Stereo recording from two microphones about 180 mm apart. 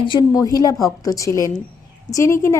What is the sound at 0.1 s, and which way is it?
A woman's voice, 20° left (ahead or behind).